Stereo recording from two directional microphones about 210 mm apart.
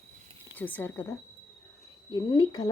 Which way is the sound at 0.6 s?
10° left (ahead or behind).